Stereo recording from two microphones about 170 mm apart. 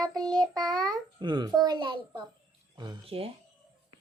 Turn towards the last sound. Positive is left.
turn(degrees=-35)  # may be behind; listen again after turning